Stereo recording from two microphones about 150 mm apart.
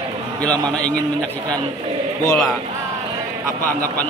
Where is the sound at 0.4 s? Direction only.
5° left (ahead or behind).